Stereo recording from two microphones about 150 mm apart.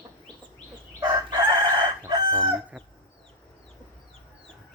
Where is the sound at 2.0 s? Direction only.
25° right (ahead or behind).